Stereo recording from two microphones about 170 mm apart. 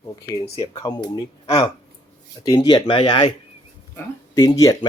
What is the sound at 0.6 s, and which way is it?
Speech, 25° left (ahead or behind).